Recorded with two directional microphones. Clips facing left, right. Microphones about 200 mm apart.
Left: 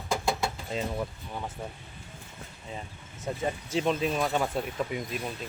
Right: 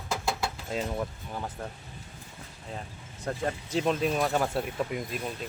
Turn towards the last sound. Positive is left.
turn(degrees=0)  # may be behind; listen again after turning